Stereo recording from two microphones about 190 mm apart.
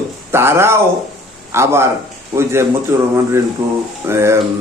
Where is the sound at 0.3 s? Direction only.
15° right (ahead or behind).